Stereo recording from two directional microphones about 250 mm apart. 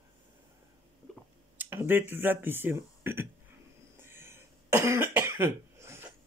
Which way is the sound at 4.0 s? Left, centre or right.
Centre.